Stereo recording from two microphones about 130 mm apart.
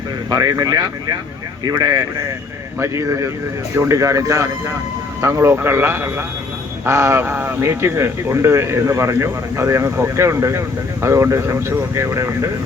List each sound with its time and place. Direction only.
0.3 s speech: 25° right (ahead or behind)